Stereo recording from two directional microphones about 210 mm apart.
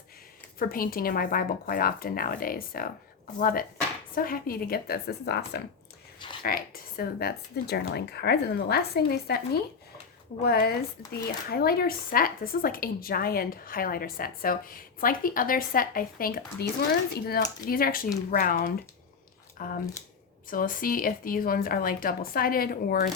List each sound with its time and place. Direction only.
0.6 s speech: 45° left (ahead or behind)
10.4 s speech: 45° left (ahead or behind)